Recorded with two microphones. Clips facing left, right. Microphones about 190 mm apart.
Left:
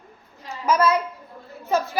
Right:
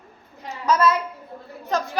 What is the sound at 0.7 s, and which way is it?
Speech, 20° left (ahead or behind).